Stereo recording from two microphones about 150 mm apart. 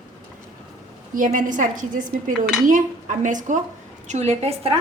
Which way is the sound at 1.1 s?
60° right (ahead or behind).